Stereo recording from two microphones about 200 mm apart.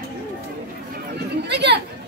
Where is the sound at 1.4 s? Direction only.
55° right (ahead or behind).